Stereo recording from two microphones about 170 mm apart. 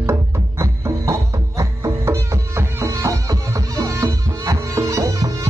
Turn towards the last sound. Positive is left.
turn(degrees=-20)  # may be behind; listen again after turning